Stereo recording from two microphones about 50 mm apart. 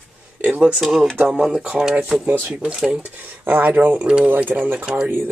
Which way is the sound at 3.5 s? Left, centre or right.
Right.